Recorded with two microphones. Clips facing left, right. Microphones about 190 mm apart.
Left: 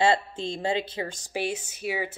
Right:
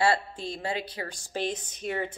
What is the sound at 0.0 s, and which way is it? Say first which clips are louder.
Speech: left 2 dB; 25° left (ahead or behind).